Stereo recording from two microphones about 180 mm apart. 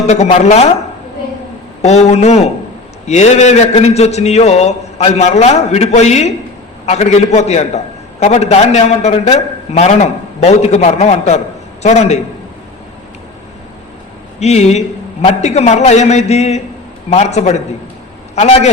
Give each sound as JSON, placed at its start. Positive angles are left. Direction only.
{"t": 0.1, "sound": "a man's voice", "side_deg": 40}
{"t": 1.8, "sound": "a man's voice", "side_deg": 35}
{"t": 14.3, "sound": "a man's voice", "side_deg": 40}